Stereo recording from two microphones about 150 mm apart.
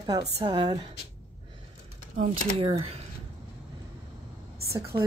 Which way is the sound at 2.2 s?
40° right (ahead or behind).